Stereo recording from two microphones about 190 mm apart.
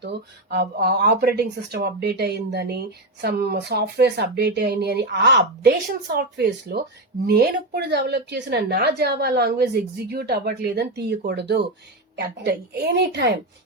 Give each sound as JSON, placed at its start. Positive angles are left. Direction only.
{"t": 0.0, "sound": "speech", "side_deg": -60}